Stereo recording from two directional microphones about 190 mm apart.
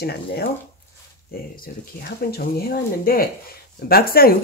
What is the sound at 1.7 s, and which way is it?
Speech, 50° left (ahead or behind).